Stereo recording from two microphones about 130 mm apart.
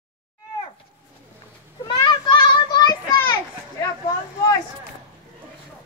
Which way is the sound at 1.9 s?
35° left (ahead or behind).